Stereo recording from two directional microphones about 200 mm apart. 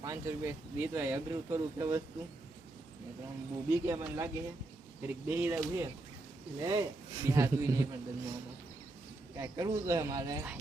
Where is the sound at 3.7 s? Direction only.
15° right (ahead or behind).